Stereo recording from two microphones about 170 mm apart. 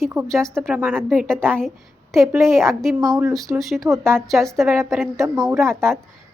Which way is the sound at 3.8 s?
15° right (ahead or behind).